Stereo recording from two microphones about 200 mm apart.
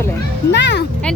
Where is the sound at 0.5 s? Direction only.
60° left (ahead or behind).